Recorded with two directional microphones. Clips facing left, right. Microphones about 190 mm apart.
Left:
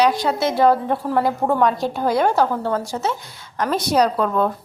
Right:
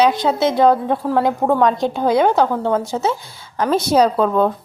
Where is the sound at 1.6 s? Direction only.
5° left (ahead or behind).